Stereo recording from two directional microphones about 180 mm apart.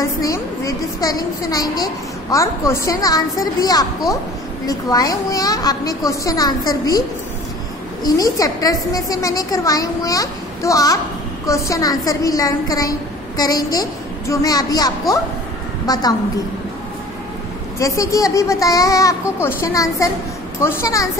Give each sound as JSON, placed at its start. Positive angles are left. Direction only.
{"t": 0.0, "sound": "a woman's voice", "side_deg": 20}
{"t": 8.0, "sound": "a woman's voice", "side_deg": 20}
{"t": 17.7, "sound": "a child's voice", "side_deg": 15}